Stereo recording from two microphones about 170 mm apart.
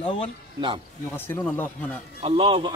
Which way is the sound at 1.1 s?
10° left (ahead or behind).